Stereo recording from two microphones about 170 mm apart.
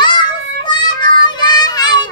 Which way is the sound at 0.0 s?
25° left (ahead or behind).